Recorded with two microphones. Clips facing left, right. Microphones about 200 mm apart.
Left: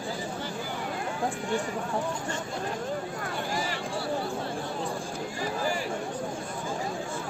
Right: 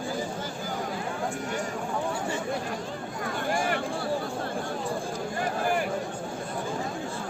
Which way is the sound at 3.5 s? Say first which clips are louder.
Right 6 dB; 55° right (ahead or behind).